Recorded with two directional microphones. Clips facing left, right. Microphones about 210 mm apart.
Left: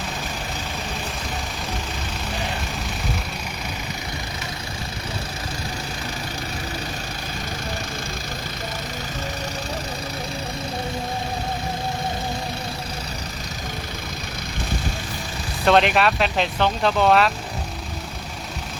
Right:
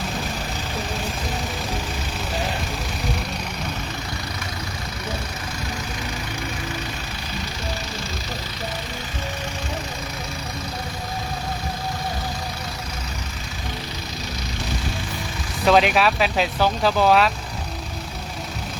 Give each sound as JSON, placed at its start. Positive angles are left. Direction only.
{"t": 15.6, "sound": "speech", "side_deg": 0}